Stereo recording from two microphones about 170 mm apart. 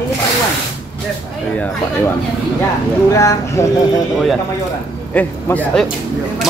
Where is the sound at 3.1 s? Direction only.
20° left (ahead or behind).